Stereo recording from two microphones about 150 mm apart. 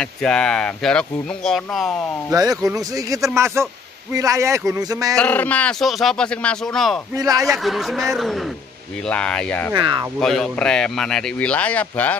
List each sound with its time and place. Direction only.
0.0 s speech: 5° left (ahead or behind)
2.3 s speech: 25° right (ahead or behind)
5.1 s speech: 10° left (ahead or behind)
7.2 s speech: 25° right (ahead or behind)
7.5 s speech: centre (ahead or behind)
9.8 s speech: 30° right (ahead or behind)
10.2 s speech: centre (ahead or behind)